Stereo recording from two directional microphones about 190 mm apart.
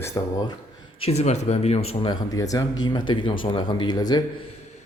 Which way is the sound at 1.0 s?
35° left (ahead or behind).